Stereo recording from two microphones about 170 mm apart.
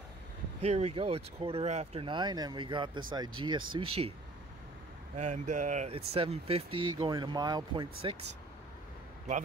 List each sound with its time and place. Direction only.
0.6 s speech: 40° right (ahead or behind)
5.1 s speech: 45° right (ahead or behind); by 8.2 s 30° right (ahead or behind)